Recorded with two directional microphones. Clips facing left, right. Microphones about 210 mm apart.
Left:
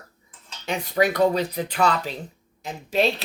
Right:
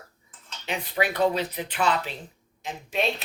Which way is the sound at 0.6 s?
40° left (ahead or behind).